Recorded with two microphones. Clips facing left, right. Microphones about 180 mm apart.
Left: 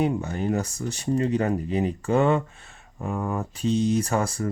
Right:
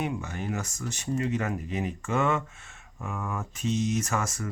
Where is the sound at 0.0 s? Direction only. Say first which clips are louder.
Left 7 dB; 35° left (ahead or behind).